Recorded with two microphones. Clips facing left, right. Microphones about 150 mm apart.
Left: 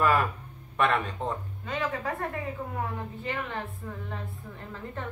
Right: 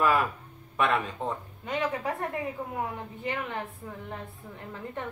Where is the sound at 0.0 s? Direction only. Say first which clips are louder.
Even; centre (ahead or behind).